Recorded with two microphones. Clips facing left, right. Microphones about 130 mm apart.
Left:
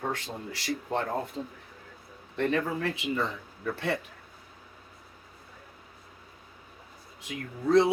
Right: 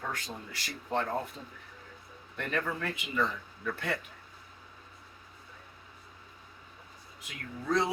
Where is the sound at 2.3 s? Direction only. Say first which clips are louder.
Left 6 dB; 30° left (ahead or behind).